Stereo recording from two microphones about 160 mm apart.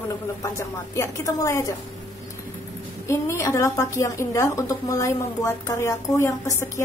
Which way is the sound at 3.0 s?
15° left (ahead or behind).